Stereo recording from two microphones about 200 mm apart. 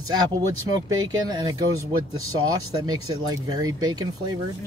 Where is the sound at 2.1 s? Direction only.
90° right.